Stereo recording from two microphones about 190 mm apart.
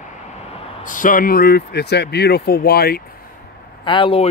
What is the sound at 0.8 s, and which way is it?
Speech, 45° left (ahead or behind).